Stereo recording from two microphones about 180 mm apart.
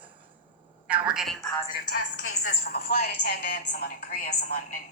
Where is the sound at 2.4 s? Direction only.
75° left (ahead or behind); by 4.3 s 60° left (ahead or behind).